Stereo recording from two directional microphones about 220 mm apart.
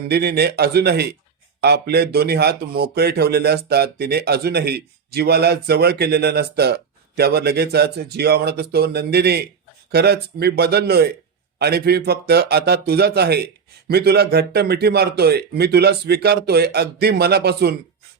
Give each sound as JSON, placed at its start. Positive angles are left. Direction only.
{"t": 0.1, "sound": "speech", "side_deg": -45}